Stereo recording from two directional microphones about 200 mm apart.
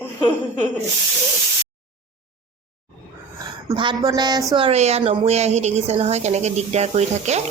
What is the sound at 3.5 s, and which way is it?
Speech, 20° right (ahead or behind).